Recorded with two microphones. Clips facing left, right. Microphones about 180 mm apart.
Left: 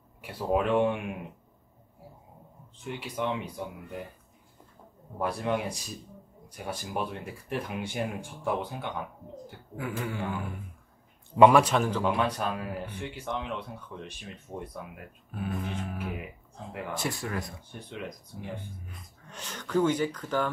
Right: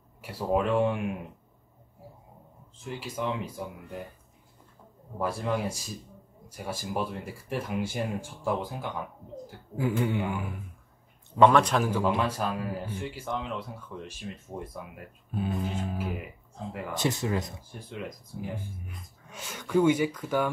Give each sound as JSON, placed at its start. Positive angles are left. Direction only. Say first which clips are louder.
{"t": 0.2, "sound": "a man's voice", "louder": "even", "side_deg": 0}
{"t": 2.8, "sound": "a man's voice", "louder": "left 1 dB", "side_deg": 0}
{"t": 5.2, "sound": "a man's voice", "louder": "even", "side_deg": 0}
{"t": 9.8, "sound": "speech", "louder": "right 6 dB", "side_deg": -25}
{"t": 11.3, "sound": "a man's voice", "louder": "left 1 dB", "side_deg": 10}
{"t": 15.3, "sound": "a sound", "louder": "right 3 dB", "side_deg": -25}
{"t": 16.9, "sound": "speech", "louder": "right 5 dB", "side_deg": -20}
{"t": 17.6, "sound": "a man's voice", "louder": "right 1 dB", "side_deg": -5}